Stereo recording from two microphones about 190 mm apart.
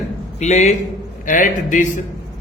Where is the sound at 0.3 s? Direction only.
35° left (ahead or behind).